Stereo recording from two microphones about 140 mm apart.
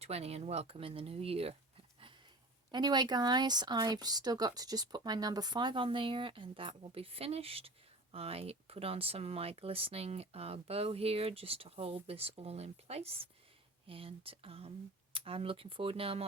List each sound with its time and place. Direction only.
0.0 s speech: 50° right (ahead or behind)
2.7 s speech: 30° right (ahead or behind)